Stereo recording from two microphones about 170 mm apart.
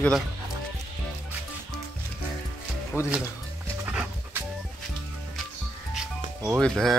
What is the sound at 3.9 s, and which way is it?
Dog, 10° right (ahead or behind).